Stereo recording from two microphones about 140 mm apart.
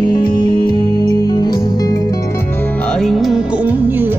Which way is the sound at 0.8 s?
25° left (ahead or behind).